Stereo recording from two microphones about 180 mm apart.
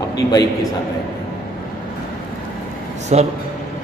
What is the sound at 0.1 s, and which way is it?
Speech, 20° left (ahead or behind).